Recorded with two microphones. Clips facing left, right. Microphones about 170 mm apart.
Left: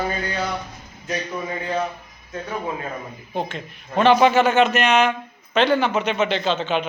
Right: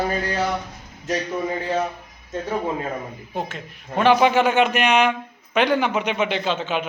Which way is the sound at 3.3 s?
5° right (ahead or behind).